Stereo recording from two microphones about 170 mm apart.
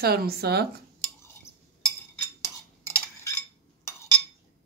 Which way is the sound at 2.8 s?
15° left (ahead or behind).